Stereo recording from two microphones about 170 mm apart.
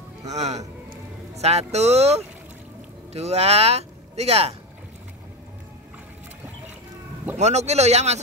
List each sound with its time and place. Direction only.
0.3 s speech: 40° right (ahead or behind)
7.3 s speech: 40° right (ahead or behind)